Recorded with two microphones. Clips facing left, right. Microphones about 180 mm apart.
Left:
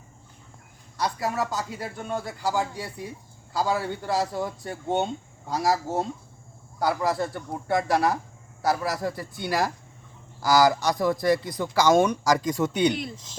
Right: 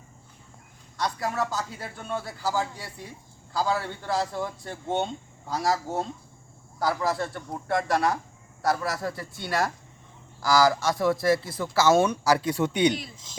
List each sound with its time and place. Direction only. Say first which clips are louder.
0.9 s speech: left 1 dB; centre (ahead or behind)
2.2 s a man's voice: left 1 dB; 15° left (ahead or behind)
2.7 s speech: left 6 dB; centre (ahead or behind)